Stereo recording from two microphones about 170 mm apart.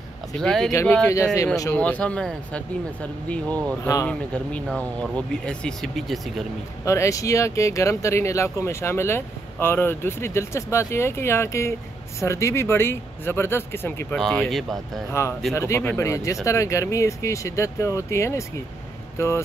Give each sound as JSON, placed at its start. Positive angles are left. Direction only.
{"t": 0.4, "sound": "speech", "side_deg": 5}
{"t": 0.7, "sound": "speech", "side_deg": 15}
{"t": 1.7, "sound": "speech", "side_deg": 10}
{"t": 4.1, "sound": "speech", "side_deg": 5}
{"t": 6.8, "sound": "speech", "side_deg": 20}
{"t": 14.1, "sound": "speech", "side_deg": 0}
{"t": 15.0, "sound": "speech", "side_deg": 15}